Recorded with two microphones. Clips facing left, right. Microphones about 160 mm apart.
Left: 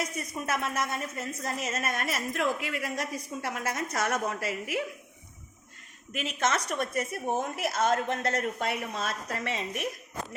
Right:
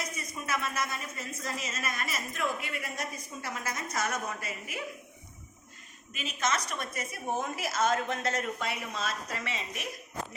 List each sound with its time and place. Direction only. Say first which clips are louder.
0.4 s a woman's voice: left 2 dB; 50° left (ahead or behind); by 4.8 s 75° left (ahead or behind)
6.1 s speech: left 3 dB; 65° left (ahead or behind)